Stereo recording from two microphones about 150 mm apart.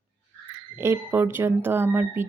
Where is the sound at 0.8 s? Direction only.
15° right (ahead or behind).